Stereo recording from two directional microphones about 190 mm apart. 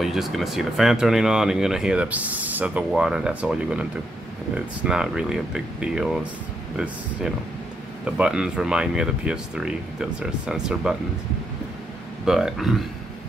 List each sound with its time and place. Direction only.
0.0 s speech: centre (ahead or behind)
12.3 s speech: centre (ahead or behind)